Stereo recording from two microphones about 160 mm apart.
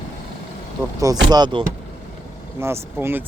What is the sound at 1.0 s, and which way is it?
Speech, 25° right (ahead or behind).